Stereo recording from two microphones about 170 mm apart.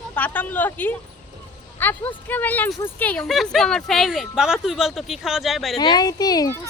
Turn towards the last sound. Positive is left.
turn(degrees=20)  # may be behind; listen again after turning